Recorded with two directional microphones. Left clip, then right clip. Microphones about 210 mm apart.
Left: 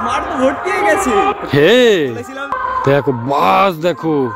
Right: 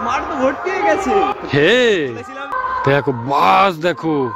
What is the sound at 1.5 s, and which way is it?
A man's voice, 10° left (ahead or behind).